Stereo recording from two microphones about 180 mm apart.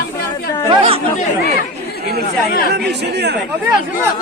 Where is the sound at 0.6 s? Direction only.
25° right (ahead or behind).